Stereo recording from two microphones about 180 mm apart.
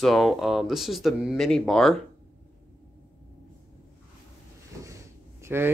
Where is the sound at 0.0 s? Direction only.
Centre (ahead or behind).